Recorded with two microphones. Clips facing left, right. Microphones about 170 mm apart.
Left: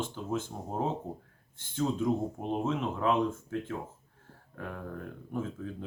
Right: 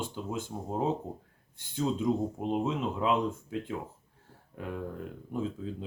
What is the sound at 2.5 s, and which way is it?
Speech, 15° right (ahead or behind).